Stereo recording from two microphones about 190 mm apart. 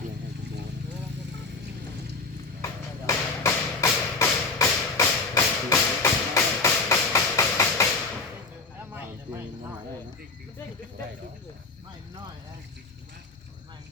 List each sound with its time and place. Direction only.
3.1 s thump: 15° left (ahead or behind)